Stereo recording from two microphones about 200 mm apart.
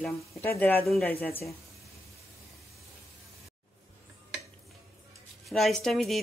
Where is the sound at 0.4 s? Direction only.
10° left (ahead or behind).